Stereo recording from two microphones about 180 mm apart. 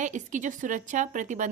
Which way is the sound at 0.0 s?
45° right (ahead or behind).